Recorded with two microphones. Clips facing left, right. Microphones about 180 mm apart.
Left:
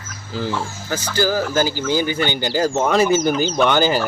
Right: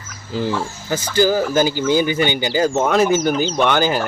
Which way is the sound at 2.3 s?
Centre (ahead or behind).